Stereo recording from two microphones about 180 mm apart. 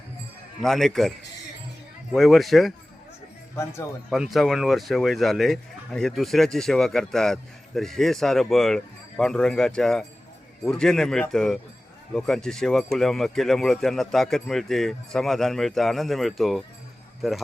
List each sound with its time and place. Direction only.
0.6 s speech: centre (ahead or behind)
2.1 s speech: centre (ahead or behind)
3.5 s speech: 15° left (ahead or behind)
4.1 s speech: centre (ahead or behind)